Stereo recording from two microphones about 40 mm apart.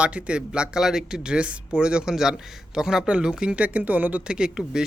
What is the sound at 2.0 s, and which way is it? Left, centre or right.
Speech, centre.